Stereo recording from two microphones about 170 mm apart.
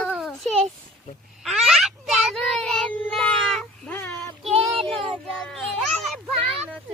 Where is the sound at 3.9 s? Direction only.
15° left (ahead or behind).